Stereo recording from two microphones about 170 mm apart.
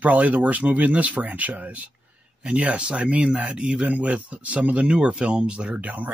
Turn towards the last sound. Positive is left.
turn(degrees=-10)  # may be behind; listen again after turning